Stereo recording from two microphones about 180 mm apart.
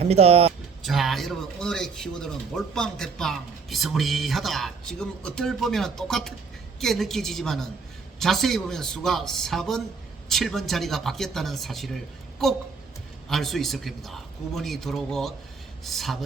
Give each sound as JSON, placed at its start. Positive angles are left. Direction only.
{"t": 0.0, "sound": "speech", "side_deg": -35}
{"t": 0.9, "sound": "speech", "side_deg": 0}
{"t": 13.2, "sound": "speech", "side_deg": 0}